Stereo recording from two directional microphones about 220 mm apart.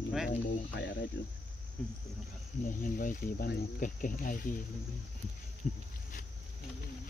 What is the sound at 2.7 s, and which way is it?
Speech, 40° left (ahead or behind).